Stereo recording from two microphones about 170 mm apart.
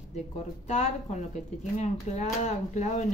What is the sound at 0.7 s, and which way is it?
Speech, 45° left (ahead or behind).